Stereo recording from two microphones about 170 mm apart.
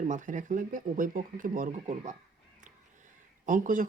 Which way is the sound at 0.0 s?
45° right (ahead or behind).